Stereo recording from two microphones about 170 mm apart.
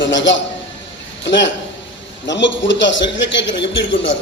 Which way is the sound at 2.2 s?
90° left.